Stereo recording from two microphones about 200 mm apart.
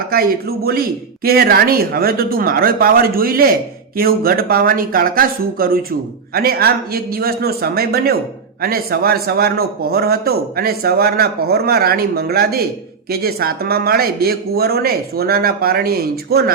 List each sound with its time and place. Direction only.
0.1 s a man's voice: 50° right (ahead or behind)